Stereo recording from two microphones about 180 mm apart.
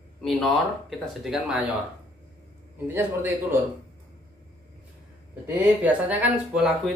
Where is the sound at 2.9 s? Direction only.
10° right (ahead or behind).